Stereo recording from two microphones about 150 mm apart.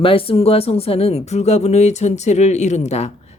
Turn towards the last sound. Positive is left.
turn(degrees=50)  # may be behind; listen again after turning